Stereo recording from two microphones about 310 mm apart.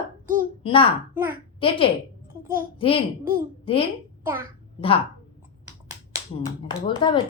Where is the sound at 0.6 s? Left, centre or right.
Centre.